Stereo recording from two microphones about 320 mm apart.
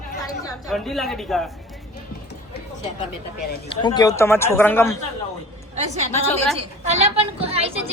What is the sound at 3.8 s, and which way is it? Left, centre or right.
A woman's voice, centre.